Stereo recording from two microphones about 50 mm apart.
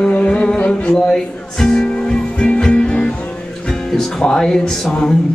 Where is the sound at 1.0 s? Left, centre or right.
Centre.